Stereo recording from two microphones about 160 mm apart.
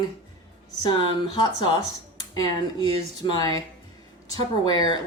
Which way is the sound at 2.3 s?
25° left (ahead or behind).